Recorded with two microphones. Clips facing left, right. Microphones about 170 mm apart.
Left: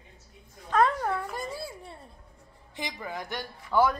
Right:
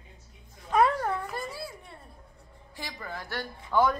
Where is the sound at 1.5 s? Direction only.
30° left (ahead or behind).